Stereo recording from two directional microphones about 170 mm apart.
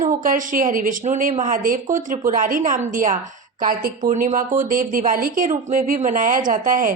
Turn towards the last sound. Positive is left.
turn(degrees=-50)  # may be behind; listen again after turning